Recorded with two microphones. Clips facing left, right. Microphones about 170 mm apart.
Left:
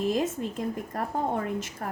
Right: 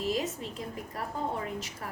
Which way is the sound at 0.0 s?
50° left (ahead or behind).